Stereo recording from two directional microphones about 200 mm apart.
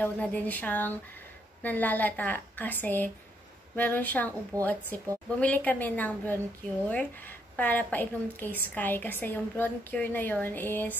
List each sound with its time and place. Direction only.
0.0 s a woman's voice: 10° left (ahead or behind)
4.5 s a woman's voice: 15° right (ahead or behind)
4.9 s a woman's voice: 10° left (ahead or behind)